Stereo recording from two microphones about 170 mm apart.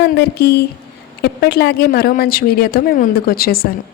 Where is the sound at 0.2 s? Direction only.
70° left (ahead or behind).